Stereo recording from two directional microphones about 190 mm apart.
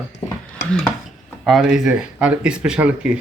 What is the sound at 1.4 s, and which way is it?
Speech, centre (ahead or behind).